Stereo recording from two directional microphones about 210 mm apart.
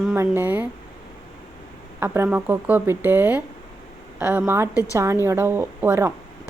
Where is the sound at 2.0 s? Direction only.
10° right (ahead or behind).